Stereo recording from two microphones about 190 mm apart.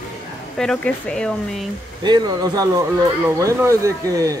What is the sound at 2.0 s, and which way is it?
Speech, 20° right (ahead or behind).